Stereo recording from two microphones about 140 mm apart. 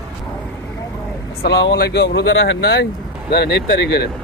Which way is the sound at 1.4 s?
90° left.